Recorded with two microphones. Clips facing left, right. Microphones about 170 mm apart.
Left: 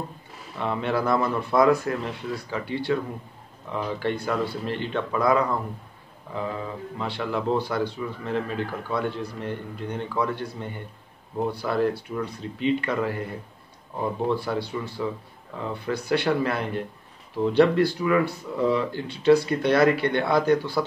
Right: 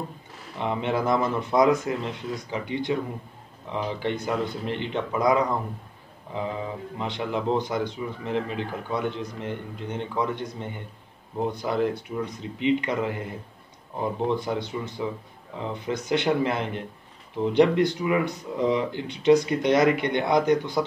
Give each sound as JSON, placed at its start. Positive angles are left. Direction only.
{"t": 0.6, "sound": "speech", "side_deg": -20}
{"t": 14.3, "sound": "speech", "side_deg": -20}